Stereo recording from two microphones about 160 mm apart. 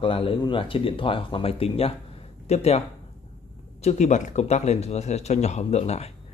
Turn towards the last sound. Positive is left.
turn(degrees=40)  # may be behind; listen again after turning